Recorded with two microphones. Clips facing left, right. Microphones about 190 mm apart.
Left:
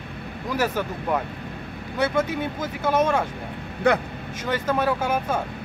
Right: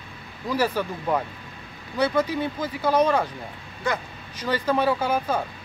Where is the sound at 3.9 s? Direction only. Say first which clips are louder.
Left 7 dB; 65° left (ahead or behind).